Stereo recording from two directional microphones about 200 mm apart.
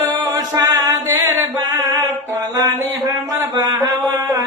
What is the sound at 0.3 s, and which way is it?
Music, 15° right (ahead or behind).